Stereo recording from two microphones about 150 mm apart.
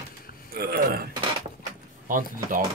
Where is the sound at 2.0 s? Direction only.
65° right (ahead or behind).